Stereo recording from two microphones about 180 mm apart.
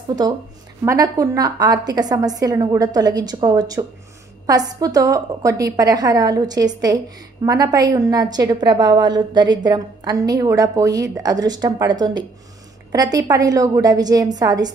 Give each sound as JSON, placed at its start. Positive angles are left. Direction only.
{"t": 0.8, "sound": "a woman's voice", "side_deg": -20}